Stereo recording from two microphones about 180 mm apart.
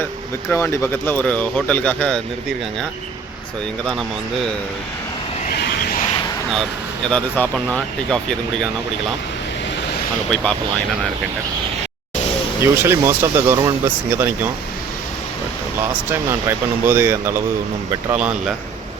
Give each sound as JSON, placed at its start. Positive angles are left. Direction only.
{"t": 0.0, "sound": "speech", "side_deg": 15}
{"t": 5.5, "sound": "vehicle", "side_deg": 60}
{"t": 7.1, "sound": "speech", "side_deg": 5}
{"t": 12.6, "sound": "speech", "side_deg": -15}
{"t": 16.3, "sound": "speech", "side_deg": -10}